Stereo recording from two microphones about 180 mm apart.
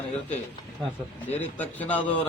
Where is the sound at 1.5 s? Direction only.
10° left (ahead or behind).